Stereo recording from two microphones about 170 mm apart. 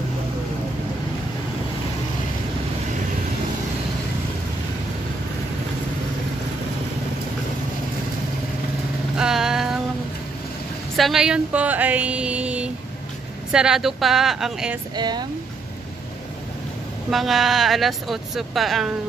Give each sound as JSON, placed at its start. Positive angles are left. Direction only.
{"t": 9.1, "sound": "vehicle", "side_deg": -5}
{"t": 11.0, "sound": "speech", "side_deg": 0}
{"t": 15.0, "sound": "speech", "side_deg": -25}
{"t": 17.1, "sound": "speech", "side_deg": 0}